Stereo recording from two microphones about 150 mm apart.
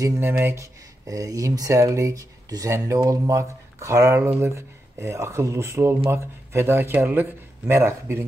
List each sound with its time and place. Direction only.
0.0 s speech: 20° right (ahead or behind)